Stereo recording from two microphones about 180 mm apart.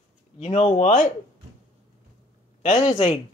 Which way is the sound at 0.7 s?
50° left (ahead or behind).